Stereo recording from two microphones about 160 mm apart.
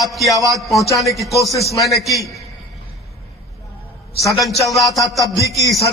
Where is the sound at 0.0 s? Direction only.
Centre (ahead or behind).